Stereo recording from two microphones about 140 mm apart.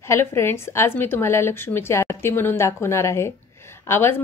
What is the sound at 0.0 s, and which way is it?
A woman's voice, 20° left (ahead or behind).